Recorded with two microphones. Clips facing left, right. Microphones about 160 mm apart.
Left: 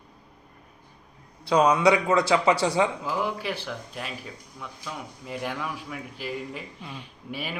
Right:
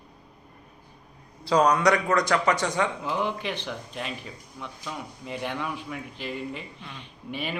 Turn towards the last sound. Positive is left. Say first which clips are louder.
# right 2 dB
turn(degrees=5)  # may be behind; listen again after turning